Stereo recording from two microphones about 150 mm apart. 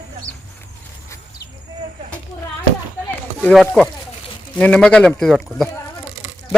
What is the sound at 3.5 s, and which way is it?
Speech, centre (ahead or behind).